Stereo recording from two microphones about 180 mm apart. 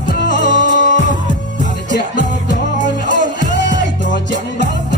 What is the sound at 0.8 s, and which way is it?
Music, 45° left (ahead or behind).